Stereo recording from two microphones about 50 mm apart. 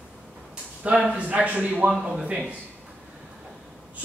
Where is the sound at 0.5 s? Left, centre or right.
Right.